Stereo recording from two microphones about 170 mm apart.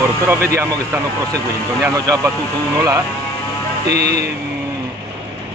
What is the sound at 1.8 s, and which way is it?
Speech, 20° right (ahead or behind).